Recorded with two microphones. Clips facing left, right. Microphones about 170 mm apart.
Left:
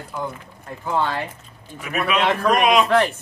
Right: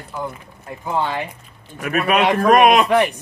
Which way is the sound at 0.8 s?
15° right (ahead or behind).